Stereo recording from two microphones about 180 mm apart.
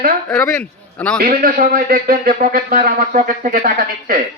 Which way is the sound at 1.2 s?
55° right (ahead or behind).